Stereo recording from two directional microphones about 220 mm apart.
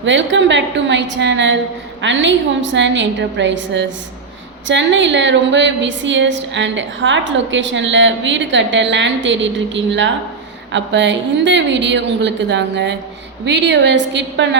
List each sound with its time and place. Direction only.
0.0 s a woman's voice: 55° right (ahead or behind)